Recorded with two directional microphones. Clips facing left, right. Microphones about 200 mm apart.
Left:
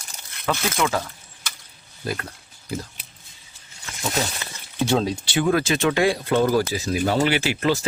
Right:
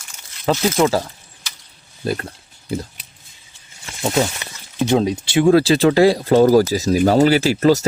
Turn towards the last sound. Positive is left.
turn(degrees=-40)  # may be behind; listen again after turning